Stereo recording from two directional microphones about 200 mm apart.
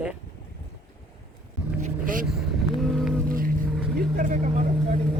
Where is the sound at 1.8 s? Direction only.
45° right (ahead or behind).